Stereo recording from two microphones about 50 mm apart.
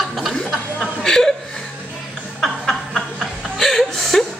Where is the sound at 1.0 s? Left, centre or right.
Centre.